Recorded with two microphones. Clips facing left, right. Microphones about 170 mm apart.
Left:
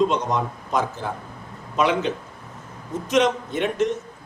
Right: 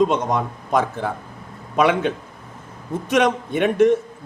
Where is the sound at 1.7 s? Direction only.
55° right (ahead or behind).